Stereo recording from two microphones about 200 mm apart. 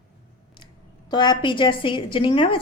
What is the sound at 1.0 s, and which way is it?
A woman's voice, 20° left (ahead or behind).